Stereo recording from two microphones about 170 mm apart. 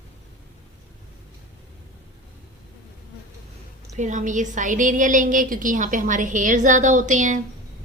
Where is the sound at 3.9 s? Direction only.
45° right (ahead or behind).